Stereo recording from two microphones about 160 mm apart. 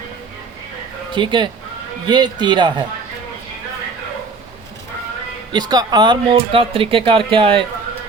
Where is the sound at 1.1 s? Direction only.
30° right (ahead or behind).